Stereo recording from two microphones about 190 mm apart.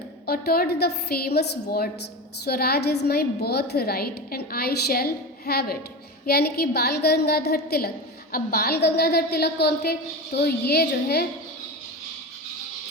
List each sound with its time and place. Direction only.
0.3 s a woman's voice: 55° left (ahead or behind)